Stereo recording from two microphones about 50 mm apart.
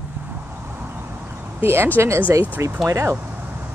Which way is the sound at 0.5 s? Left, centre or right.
Right.